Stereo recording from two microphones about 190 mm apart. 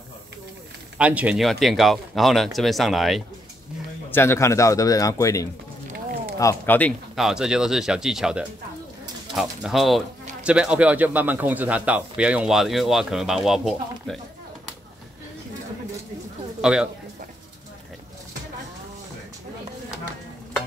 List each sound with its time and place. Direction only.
0.9 s speech: 5° right (ahead or behind)
4.1 s a man's voice: 15° left (ahead or behind)
7.2 s speech: 5° right (ahead or behind)
16.6 s speech: 5° right (ahead or behind)